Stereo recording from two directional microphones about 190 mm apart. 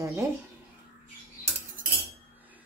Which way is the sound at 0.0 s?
15° right (ahead or behind).